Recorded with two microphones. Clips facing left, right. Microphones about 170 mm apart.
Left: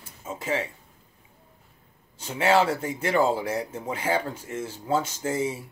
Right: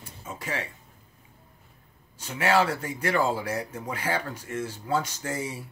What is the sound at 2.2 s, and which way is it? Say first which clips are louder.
Speech: left 2 dB; 25° left (ahead or behind).